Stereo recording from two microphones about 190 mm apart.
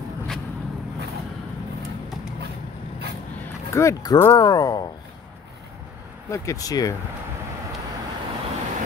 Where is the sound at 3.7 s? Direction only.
15° left (ahead or behind).